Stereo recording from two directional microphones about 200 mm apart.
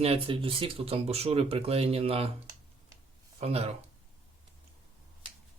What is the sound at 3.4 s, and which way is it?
Speech, 30° right (ahead or behind).